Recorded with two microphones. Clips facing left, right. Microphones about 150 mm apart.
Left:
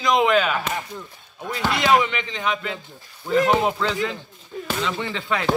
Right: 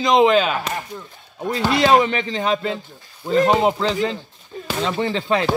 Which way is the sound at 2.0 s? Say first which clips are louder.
Right 5 dB; 40° right (ahead or behind).